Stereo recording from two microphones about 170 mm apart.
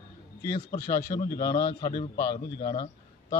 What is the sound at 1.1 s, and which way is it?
Speech, 60° left (ahead or behind).